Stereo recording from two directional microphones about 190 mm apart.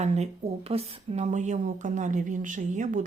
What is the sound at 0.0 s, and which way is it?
Speech, 35° right (ahead or behind).